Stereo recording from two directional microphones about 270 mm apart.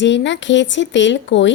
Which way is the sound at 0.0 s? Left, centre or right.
Left.